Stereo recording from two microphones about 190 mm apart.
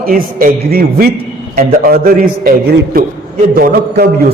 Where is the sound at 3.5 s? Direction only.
50° right (ahead or behind).